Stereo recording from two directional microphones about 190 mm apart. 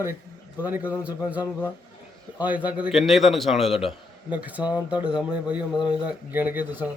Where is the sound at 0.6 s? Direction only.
10° right (ahead or behind).